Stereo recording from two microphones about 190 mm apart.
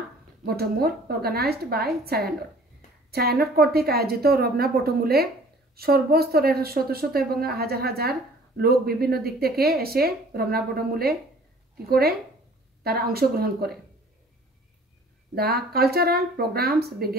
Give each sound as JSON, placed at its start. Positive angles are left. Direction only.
{"t": 0.5, "sound": "a woman's voice", "side_deg": -55}
{"t": 15.3, "sound": "a woman's voice", "side_deg": -55}